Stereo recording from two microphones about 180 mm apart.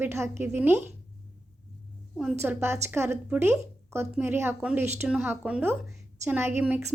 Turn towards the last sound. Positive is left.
turn(degrees=-10)  # may be behind; listen again after turning